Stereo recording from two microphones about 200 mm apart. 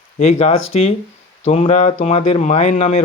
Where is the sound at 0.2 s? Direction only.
35° left (ahead or behind).